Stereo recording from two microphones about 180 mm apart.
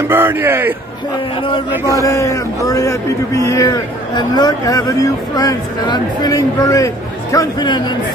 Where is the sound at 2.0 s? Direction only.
20° left (ahead or behind).